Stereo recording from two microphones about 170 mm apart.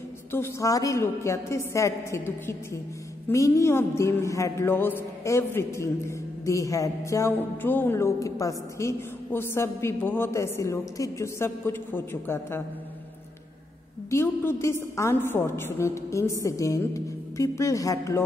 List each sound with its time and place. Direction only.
0.3 s speech: 15° left (ahead or behind)
14.1 s speech: 15° left (ahead or behind)